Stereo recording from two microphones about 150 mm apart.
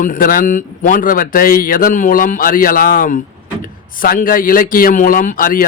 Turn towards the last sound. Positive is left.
turn(degrees=70)  # may be behind; listen again after turning